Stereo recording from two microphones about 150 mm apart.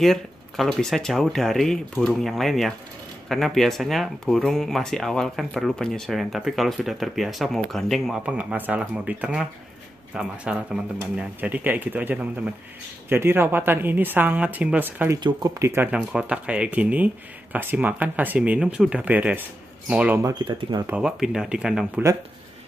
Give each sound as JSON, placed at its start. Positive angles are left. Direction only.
{"t": 0.0, "sound": "speech", "side_deg": 0}
{"t": 15.1, "sound": "speech", "side_deg": -30}
{"t": 15.7, "sound": "speech", "side_deg": -10}
{"t": 20.2, "sound": "speech", "side_deg": -20}
{"t": 20.8, "sound": "speech", "side_deg": -5}